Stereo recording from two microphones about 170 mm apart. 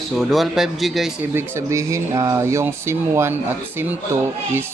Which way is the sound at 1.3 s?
15° right (ahead or behind).